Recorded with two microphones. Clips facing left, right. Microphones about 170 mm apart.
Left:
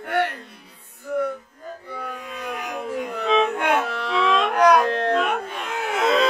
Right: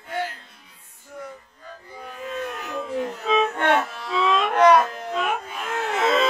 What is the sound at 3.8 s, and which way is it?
Carnatic music, 70° left (ahead or behind).